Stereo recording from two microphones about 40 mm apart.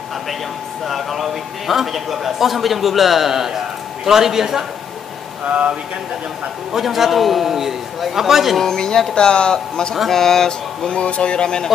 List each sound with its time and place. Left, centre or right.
0.8 s a man's voice: centre
5.4 s speech: right
6.7 s a man's voice: centre
8.6 s speech: centre
10.9 s speech: left